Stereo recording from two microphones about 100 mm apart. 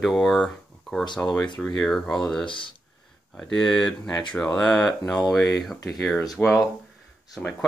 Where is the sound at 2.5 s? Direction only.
55° left (ahead or behind).